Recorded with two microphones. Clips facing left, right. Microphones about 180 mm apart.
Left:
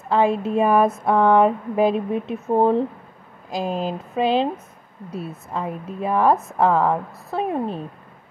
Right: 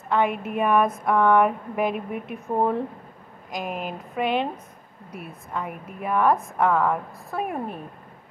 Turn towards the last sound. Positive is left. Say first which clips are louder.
# left 5 dB
turn(degrees=25)  # may be behind; listen again after turning